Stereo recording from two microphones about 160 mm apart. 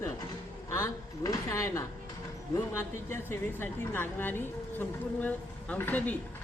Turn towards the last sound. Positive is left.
turn(degrees=10)  # may be behind; listen again after turning